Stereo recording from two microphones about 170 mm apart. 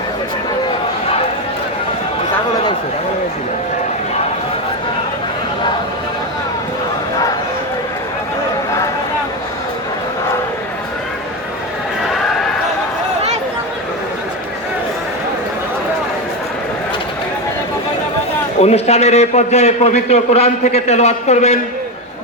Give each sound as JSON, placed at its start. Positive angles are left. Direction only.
{"t": 18.6, "sound": "a man's voice", "side_deg": 40}